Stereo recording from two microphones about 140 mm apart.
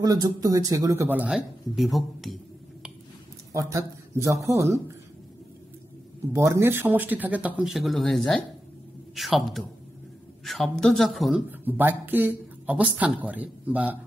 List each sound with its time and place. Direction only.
0.0 s speech: 25° right (ahead or behind); by 2.3 s centre (ahead or behind)
3.5 s speech: 20° right (ahead or behind)
6.3 s a man's voice: 20° right (ahead or behind); by 11.4 s centre (ahead or behind)
11.6 s speech: 15° right (ahead or behind)